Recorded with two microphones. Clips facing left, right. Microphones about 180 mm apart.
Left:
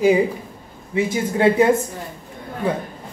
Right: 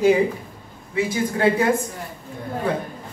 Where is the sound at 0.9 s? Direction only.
25° left (ahead or behind).